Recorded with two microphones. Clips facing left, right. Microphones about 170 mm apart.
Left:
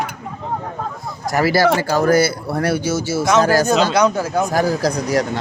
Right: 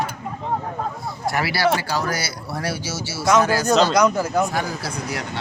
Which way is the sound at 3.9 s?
30° left (ahead or behind).